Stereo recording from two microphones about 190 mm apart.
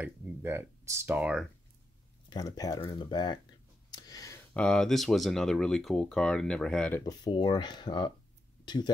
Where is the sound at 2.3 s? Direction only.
20° left (ahead or behind).